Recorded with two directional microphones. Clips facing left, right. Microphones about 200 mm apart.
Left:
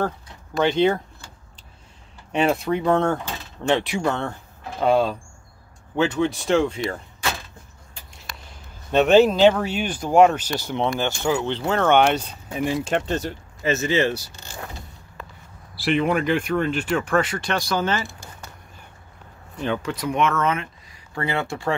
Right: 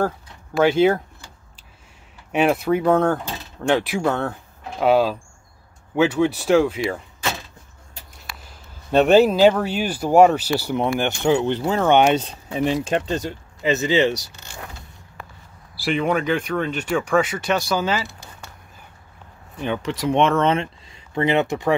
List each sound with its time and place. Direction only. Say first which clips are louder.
0.6 s speech: right 3 dB; 5° right (ahead or behind)
2.3 s speech: right 2 dB; 5° right (ahead or behind)
9.0 s speech: right 1 dB; 5° right (ahead or behind)
11.1 s speech: right 4 dB; 20° right (ahead or behind)
11.6 s speech: right 1 dB; 5° right (ahead or behind)
11.9 s speech: right 3 dB; 15° right (ahead or behind)
14.3 s vehicle: left 1 dB; 35° left (ahead or behind)
15.9 s speech: even; centre (ahead or behind)
17.7 s speech: right 1 dB; 10° right (ahead or behind)
19.6 s speech: right 2 dB; 20° right (ahead or behind)